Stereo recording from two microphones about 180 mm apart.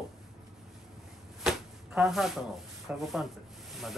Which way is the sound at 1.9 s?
Centre (ahead or behind).